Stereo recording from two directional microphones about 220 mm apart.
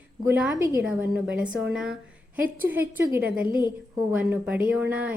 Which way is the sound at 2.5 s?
10° right (ahead or behind).